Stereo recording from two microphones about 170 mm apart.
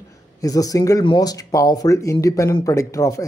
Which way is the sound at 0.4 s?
20° left (ahead or behind).